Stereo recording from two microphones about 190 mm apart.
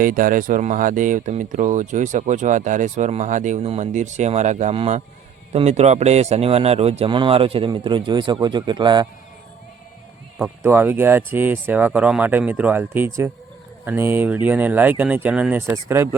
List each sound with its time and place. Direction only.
0.0 s a man's voice: 45° right (ahead or behind); by 9.0 s 25° right (ahead or behind)
10.6 s speech: 10° right (ahead or behind)